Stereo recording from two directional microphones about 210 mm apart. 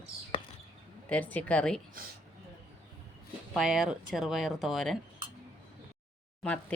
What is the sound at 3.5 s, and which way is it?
Speech, centre (ahead or behind).